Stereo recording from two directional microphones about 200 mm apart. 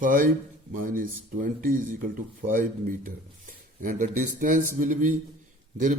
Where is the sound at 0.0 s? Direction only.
45° right (ahead or behind).